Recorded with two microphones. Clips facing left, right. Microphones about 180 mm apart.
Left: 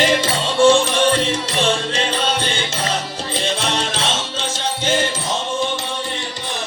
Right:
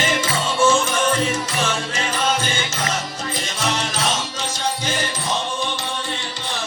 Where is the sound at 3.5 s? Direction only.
30° left (ahead or behind).